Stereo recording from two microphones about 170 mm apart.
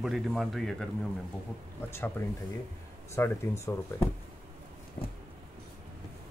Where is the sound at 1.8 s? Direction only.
15° left (ahead or behind).